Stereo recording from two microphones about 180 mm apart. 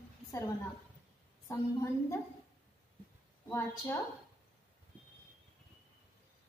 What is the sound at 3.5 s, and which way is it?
Speech, 15° left (ahead or behind).